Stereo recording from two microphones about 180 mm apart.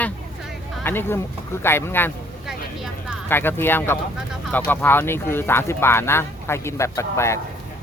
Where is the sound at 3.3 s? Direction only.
10° left (ahead or behind).